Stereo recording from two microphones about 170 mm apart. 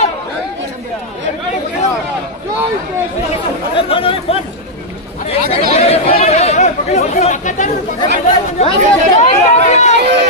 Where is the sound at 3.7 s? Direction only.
30° left (ahead or behind).